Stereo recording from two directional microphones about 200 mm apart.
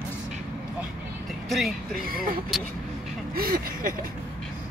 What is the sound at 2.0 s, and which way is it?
Speech, 45° right (ahead or behind).